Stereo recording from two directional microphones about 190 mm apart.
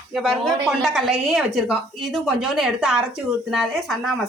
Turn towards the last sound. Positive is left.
turn(degrees=0)  # may be behind; listen again after turning